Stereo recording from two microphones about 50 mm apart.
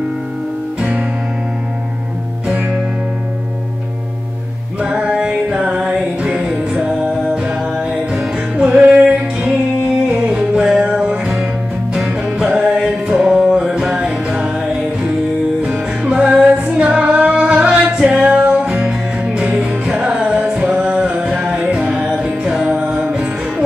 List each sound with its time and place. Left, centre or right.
0.7 s music: right
2.4 s music: right
4.7 s music: right
7.4 s music: right; by 12.4 s centre
12.4 s music: right
15.6 s music: right
20.9 s a sound: right
21.5 s music: centre